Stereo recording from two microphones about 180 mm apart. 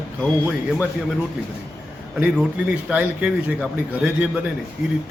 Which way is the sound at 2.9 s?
5° right (ahead or behind).